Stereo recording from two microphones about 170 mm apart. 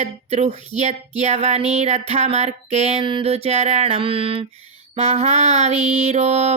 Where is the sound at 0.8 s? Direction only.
40° right (ahead or behind).